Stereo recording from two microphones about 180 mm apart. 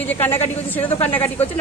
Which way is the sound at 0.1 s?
10° left (ahead or behind).